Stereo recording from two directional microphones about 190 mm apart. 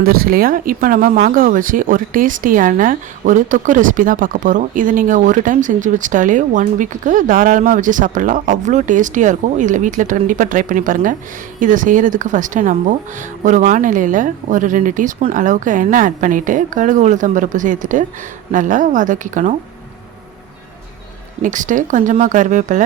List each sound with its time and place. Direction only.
0.0 s speech: 50° right (ahead or behind)
21.4 s speech: 40° right (ahead or behind)